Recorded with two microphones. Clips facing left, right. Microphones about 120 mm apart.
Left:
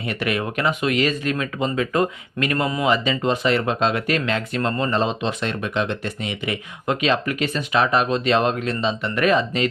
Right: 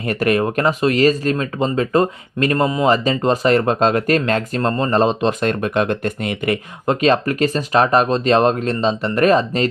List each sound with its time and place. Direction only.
0.1 s speech: 40° right (ahead or behind)
6.8 s speech: 40° right (ahead or behind)